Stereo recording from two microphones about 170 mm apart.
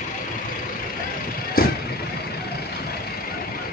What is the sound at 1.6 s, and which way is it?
Vehicle, 60° left (ahead or behind).